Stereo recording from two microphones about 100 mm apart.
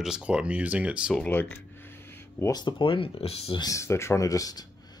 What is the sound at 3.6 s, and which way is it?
Speech, 35° left (ahead or behind).